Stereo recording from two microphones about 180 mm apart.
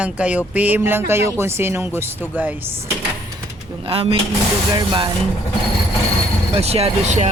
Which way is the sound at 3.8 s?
35° right (ahead or behind).